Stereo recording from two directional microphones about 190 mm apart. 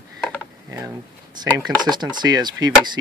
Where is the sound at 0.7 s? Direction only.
15° right (ahead or behind).